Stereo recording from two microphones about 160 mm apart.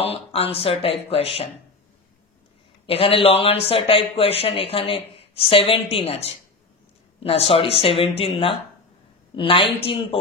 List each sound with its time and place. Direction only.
0.0 s speech: 35° left (ahead or behind)
2.9 s speech: 35° left (ahead or behind)